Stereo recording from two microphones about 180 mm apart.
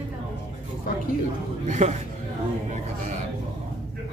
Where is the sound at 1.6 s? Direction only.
40° right (ahead or behind).